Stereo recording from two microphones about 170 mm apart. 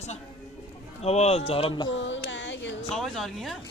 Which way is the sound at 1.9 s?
90° left.